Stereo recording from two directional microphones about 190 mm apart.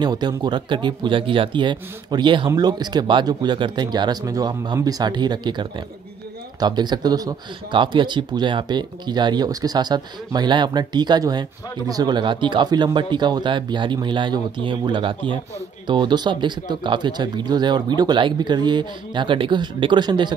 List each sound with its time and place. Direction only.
0.0 s speech: 20° right (ahead or behind)